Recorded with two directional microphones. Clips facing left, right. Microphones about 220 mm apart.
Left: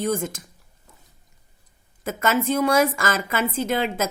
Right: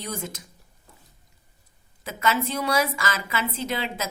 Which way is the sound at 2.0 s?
50° left (ahead or behind).